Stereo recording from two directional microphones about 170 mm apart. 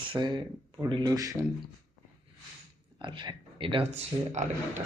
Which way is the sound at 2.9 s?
25° right (ahead or behind).